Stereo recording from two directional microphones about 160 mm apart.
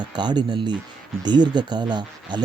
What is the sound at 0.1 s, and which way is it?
Speech, 25° right (ahead or behind).